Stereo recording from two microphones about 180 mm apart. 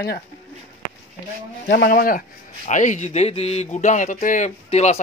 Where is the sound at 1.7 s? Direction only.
60° left (ahead or behind).